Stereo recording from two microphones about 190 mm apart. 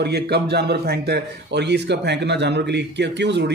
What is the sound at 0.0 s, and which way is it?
A man's voice, 60° right (ahead or behind).